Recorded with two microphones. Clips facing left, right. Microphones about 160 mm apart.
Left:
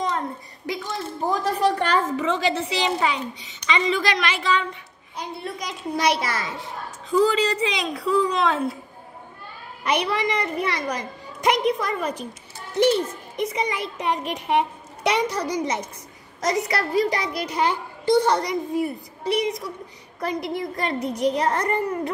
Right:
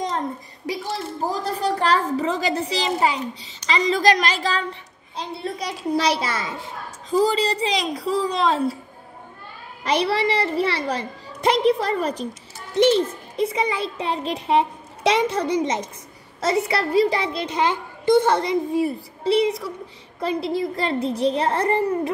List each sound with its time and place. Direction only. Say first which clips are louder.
0.7 s a sound: right 2 dB; 35° right (ahead or behind)
2.1 s a woman's voice: even; 40° right (ahead or behind)
9.8 s a woman's voice: right 2 dB; 30° right (ahead or behind)